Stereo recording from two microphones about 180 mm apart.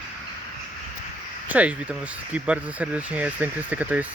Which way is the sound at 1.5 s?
10° right (ahead or behind).